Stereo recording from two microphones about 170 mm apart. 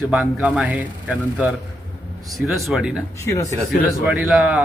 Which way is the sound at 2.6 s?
5° right (ahead or behind).